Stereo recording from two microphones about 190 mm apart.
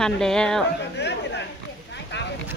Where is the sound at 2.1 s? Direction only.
65° left (ahead or behind).